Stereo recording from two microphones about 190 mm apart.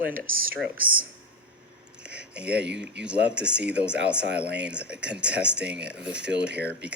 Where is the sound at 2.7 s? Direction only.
60° right (ahead or behind).